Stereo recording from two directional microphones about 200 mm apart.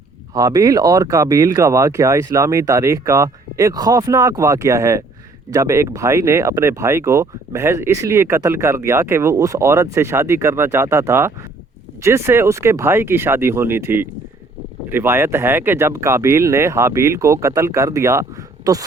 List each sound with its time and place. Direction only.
0.3 s speech: 15° right (ahead or behind)